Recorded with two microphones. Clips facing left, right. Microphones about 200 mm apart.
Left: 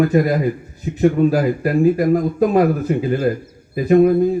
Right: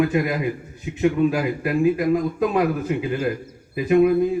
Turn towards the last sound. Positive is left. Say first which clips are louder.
# left 4 dB
turn(degrees=40)  # may be behind; listen again after turning